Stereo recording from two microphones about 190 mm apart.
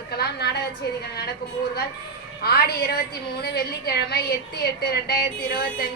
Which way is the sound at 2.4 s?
55° left (ahead or behind).